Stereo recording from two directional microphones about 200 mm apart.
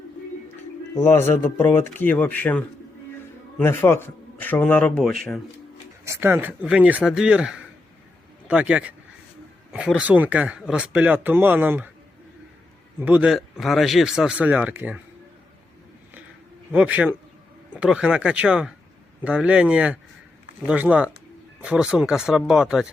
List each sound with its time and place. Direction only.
0.9 s speech: 10° left (ahead or behind)
6.1 s speech: 10° right (ahead or behind)
10.0 s speech: 10° right (ahead or behind)
13.0 s speech: 10° right (ahead or behind)
16.7 s speech: 5° right (ahead or behind)